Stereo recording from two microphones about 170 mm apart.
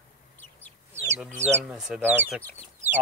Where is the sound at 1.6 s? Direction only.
5° right (ahead or behind).